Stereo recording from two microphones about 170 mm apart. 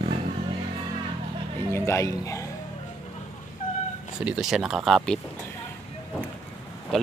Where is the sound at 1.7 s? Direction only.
15° left (ahead or behind).